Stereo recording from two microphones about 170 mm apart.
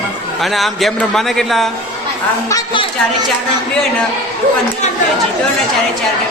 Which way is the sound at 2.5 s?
30° left (ahead or behind).